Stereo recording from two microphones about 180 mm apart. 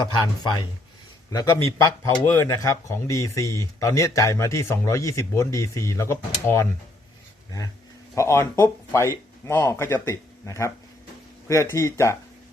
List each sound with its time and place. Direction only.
0.0 s speech: 25° left (ahead or behind)
8.1 s speech: 15° left (ahead or behind)